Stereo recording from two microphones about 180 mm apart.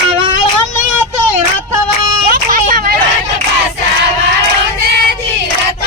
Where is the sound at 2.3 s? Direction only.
50° right (ahead or behind).